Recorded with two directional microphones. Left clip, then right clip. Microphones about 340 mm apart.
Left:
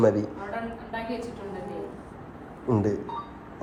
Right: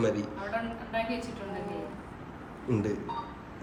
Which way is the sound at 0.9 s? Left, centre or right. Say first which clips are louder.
Right 2 dB; centre.